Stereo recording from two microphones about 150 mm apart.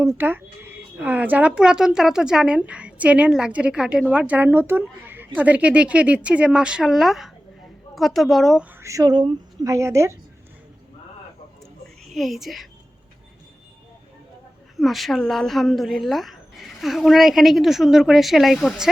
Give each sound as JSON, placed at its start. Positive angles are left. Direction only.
{"t": 0.2, "sound": "a woman's voice", "side_deg": -15}
{"t": 8.8, "sound": "a woman's voice", "side_deg": -20}
{"t": 12.0, "sound": "speech", "side_deg": 0}
{"t": 14.8, "sound": "a woman's voice", "side_deg": 0}